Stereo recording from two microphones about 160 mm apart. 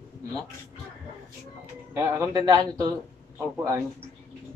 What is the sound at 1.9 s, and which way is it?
Speech, 15° right (ahead or behind).